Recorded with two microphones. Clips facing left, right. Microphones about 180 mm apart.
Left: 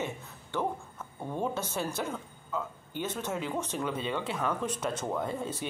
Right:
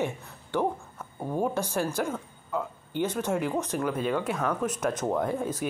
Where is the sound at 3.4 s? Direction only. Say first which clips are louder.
Right 5 dB; 10° right (ahead or behind).